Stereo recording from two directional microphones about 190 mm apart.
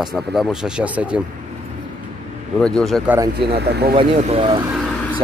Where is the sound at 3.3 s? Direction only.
60° right (ahead or behind).